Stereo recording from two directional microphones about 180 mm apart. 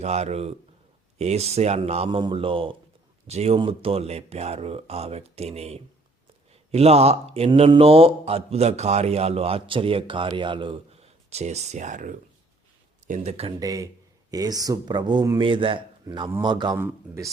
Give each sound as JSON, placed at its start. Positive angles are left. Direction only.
{"t": 0.0, "sound": "speech", "side_deg": -35}
{"t": 13.6, "sound": "a man's voice", "side_deg": -20}